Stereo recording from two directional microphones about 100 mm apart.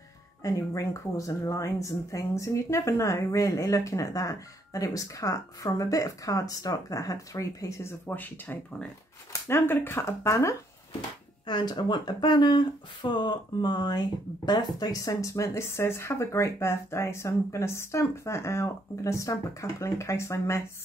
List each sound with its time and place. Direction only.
0.4 s speech: 30° left (ahead or behind)
8.1 s speech: 20° left (ahead or behind)
11.4 s speech: 45° left (ahead or behind); by 20.6 s 30° left (ahead or behind)